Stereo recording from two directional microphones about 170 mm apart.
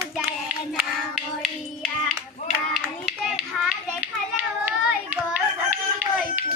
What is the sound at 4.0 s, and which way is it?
Hands, 10° right (ahead or behind).